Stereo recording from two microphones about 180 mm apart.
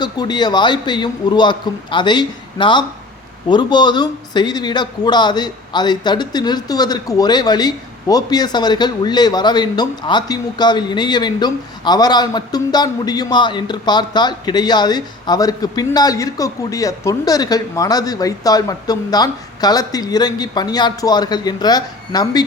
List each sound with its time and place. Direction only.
0.0 s a man's voice: 25° left (ahead or behind)